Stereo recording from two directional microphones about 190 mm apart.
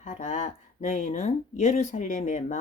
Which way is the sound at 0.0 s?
40° left (ahead or behind).